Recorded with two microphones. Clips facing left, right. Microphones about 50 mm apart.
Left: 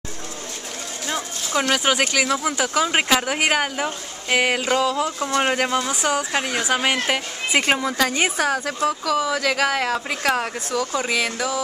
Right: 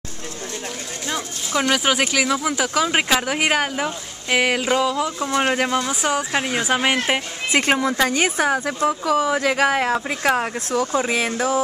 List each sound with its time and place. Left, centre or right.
1.0 s speech: centre
7.5 s speech: centre
8.4 s speech: centre
9.0 s speech: right
10.7 s speech: right